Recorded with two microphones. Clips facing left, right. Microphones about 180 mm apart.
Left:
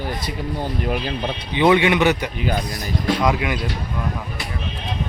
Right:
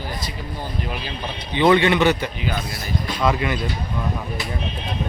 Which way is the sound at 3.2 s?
10° left (ahead or behind).